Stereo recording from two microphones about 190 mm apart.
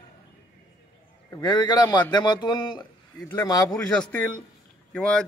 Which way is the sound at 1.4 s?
20° left (ahead or behind).